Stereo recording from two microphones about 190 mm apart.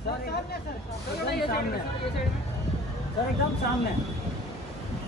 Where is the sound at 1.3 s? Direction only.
55° left (ahead or behind).